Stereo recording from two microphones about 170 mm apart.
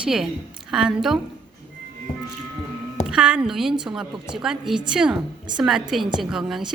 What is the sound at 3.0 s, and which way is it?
A woman's voice, 5° right (ahead or behind).